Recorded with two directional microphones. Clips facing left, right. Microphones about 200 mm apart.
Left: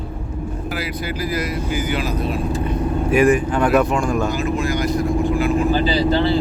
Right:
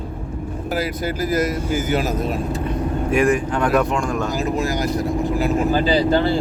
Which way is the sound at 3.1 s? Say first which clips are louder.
Left 3 dB; 5° left (ahead or behind).